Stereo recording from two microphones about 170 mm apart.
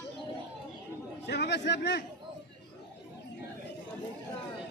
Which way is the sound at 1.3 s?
85° left.